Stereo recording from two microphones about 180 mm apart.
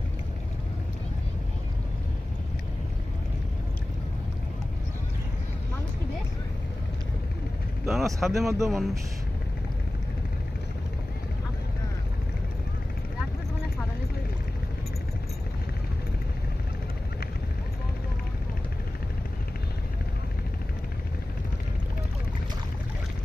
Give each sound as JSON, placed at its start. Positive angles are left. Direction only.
{"t": 7.8, "sound": "speech", "side_deg": 0}